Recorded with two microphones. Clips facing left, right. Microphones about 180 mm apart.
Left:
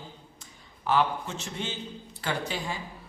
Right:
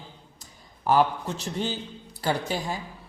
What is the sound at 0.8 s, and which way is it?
A man's voice, 40° right (ahead or behind).